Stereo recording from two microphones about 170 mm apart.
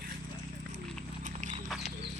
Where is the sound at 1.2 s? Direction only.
45° right (ahead or behind).